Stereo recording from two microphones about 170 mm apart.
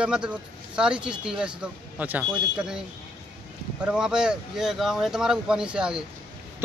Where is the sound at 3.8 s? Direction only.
5° right (ahead or behind).